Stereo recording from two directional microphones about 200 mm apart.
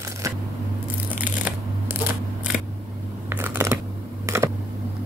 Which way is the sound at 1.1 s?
10° right (ahead or behind).